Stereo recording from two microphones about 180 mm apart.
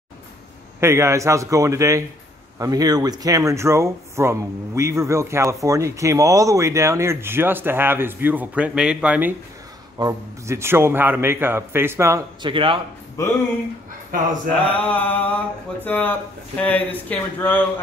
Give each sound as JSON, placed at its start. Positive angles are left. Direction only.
{"t": 0.7, "sound": "speech", "side_deg": -15}
{"t": 9.9, "sound": "speech", "side_deg": -20}
{"t": 12.4, "sound": "speech", "side_deg": -30}
{"t": 13.2, "sound": "speech", "side_deg": 15}
{"t": 14.8, "sound": "speech", "side_deg": 10}